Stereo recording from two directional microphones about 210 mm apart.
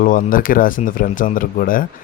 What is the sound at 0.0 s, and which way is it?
Speech, 40° left (ahead or behind).